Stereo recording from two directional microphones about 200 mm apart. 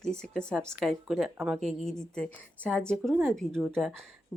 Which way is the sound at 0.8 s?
Centre (ahead or behind).